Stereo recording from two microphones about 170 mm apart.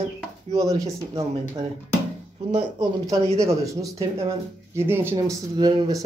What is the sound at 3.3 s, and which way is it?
Speech, 15° right (ahead or behind).